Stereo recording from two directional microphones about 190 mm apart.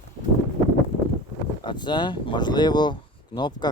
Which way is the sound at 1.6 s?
25° left (ahead or behind).